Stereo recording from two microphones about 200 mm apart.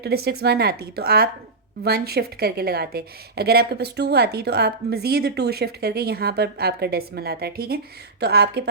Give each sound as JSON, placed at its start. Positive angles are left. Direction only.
{"t": 0.0, "sound": "a woman's voice", "side_deg": -50}